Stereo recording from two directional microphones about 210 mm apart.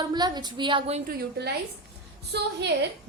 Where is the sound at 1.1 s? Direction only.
50° right (ahead or behind).